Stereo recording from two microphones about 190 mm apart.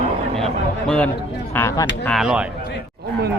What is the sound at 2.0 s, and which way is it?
Speech, centre (ahead or behind).